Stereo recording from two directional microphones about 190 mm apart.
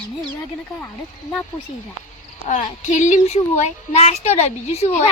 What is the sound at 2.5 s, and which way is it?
Speech, 40° left (ahead or behind).